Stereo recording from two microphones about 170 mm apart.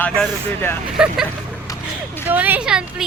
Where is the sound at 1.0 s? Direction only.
5° right (ahead or behind).